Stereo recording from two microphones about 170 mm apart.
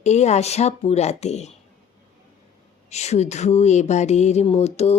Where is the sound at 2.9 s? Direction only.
40° left (ahead or behind).